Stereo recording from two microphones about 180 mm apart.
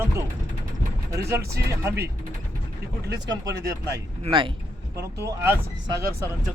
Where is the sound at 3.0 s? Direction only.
70° right (ahead or behind).